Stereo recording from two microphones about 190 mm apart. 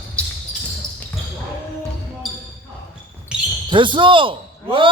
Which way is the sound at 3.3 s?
5° right (ahead or behind).